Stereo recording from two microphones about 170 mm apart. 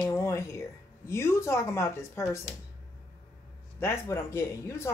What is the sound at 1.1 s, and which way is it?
Speech, 15° left (ahead or behind).